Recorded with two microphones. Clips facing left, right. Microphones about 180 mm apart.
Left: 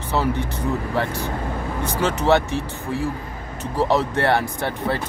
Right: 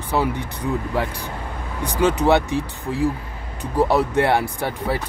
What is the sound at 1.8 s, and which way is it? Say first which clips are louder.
Speech: right 2 dB; 15° right (ahead or behind).